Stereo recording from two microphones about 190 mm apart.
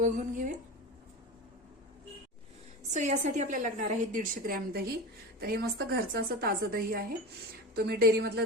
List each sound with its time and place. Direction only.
0.0 s a woman's voice: 40° right (ahead or behind)
2.9 s a woman's voice: 40° right (ahead or behind); by 8.4 s 60° right (ahead or behind)